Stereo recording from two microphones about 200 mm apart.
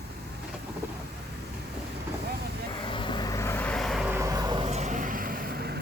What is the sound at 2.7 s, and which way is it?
Vehicle, 25° left (ahead or behind).